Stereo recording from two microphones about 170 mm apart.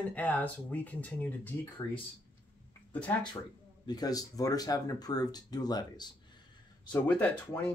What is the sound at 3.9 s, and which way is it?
Speech, 20° left (ahead or behind).